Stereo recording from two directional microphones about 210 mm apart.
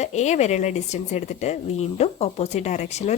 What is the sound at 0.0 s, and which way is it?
Speech, 35° left (ahead or behind).